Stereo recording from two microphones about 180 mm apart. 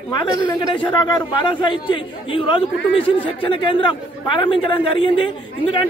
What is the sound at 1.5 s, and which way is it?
A man's voice, 25° left (ahead or behind).